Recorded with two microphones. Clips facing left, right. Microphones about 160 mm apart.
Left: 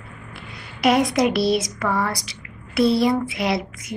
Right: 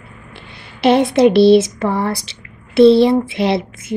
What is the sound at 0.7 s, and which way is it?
Speech, 30° right (ahead or behind).